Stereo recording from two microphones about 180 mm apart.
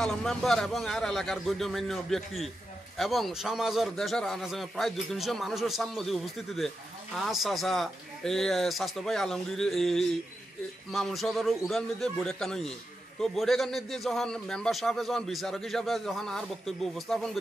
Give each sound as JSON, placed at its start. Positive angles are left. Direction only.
{"t": 0.0, "sound": "a man's voice", "side_deg": 5}